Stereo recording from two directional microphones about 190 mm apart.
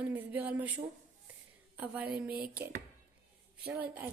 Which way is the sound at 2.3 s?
50° right (ahead or behind).